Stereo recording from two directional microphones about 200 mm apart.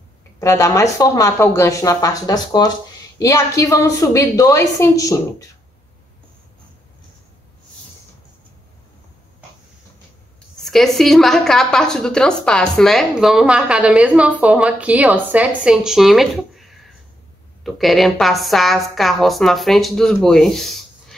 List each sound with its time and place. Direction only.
0.4 s speech: 15° left (ahead or behind)
10.6 s a woman's voice: centre (ahead or behind)